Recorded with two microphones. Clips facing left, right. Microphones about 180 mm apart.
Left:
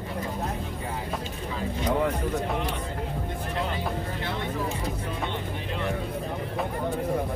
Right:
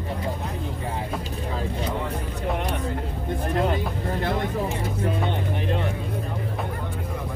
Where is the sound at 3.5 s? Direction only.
50° right (ahead or behind).